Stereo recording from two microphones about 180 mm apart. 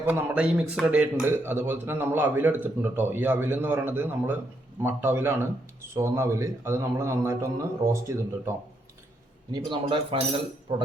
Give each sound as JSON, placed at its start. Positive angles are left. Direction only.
{"t": 0.0, "sound": "speech", "side_deg": -10}